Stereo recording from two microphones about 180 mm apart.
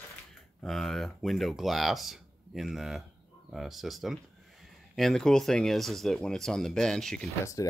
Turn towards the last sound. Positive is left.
turn(degrees=20)  # may be behind; listen again after turning